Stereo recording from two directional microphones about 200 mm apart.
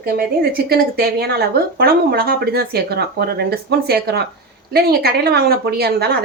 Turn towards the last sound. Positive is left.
turn(degrees=-50)  # may be behind; listen again after turning